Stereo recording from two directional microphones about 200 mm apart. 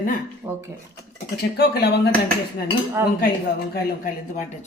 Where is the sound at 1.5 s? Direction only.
50° left (ahead or behind).